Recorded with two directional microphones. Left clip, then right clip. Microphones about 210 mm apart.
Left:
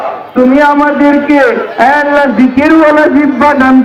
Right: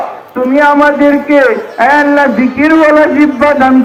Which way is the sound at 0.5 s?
5° right (ahead or behind).